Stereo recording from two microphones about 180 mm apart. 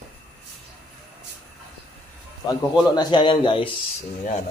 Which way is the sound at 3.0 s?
25° left (ahead or behind).